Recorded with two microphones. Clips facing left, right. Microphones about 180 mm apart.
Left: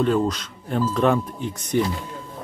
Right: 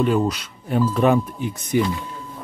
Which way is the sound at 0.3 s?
10° right (ahead or behind).